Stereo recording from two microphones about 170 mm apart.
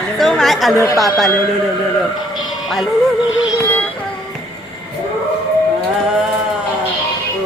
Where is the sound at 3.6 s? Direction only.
10° left (ahead or behind).